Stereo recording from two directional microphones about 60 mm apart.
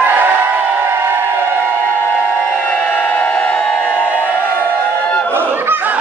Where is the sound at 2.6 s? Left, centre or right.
Left.